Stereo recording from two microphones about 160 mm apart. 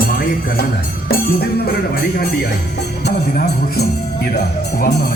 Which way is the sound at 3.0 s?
70° left (ahead or behind).